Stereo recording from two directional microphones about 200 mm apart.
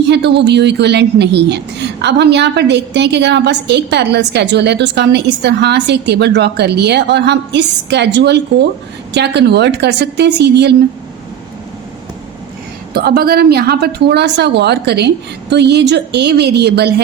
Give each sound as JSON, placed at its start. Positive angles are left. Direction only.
{"t": 0.1, "sound": "a woman's voice", "side_deg": -60}
{"t": 12.9, "sound": "a woman's voice", "side_deg": -50}